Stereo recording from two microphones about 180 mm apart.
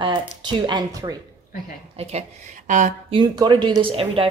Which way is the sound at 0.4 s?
25° right (ahead or behind).